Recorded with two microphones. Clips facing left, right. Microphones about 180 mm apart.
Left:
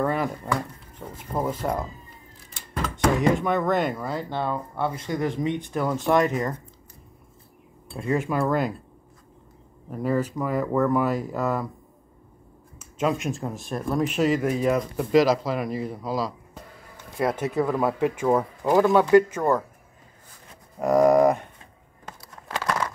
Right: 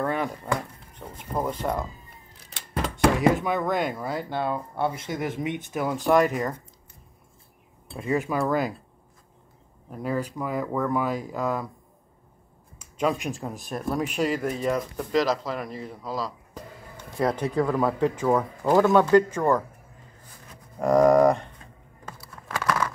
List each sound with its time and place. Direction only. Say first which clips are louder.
0.0 s chop: left 2 dB; centre (ahead or behind)
0.9 s speech: left 1 dB; 5° left (ahead or behind)
3.3 s speech: left 2 dB; centre (ahead or behind)
7.9 s speech: left 1 dB; 5° right (ahead or behind)
9.8 s speech: left 4 dB; centre (ahead or behind)
12.7 s speech: left 1 dB; centre (ahead or behind)
20.8 s speech: even; 10° left (ahead or behind)
22.5 s crumpling: right 1 dB; 20° left (ahead or behind)